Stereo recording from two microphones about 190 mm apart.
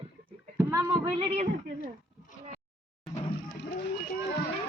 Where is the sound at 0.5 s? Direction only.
15° right (ahead or behind).